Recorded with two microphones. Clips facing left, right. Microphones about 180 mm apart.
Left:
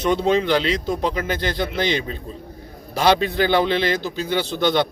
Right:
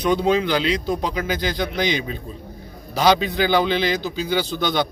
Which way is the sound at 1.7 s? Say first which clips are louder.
Left 1 dB; 30° left (ahead or behind).